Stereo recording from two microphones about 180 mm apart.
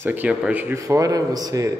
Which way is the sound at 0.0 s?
10° right (ahead or behind).